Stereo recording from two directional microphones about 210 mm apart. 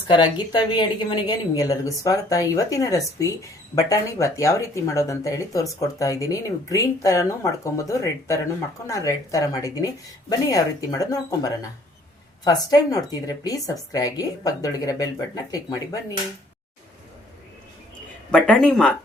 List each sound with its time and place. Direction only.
0.1 s a woman's voice: 20° left (ahead or behind)
18.3 s speech: 5° left (ahead or behind)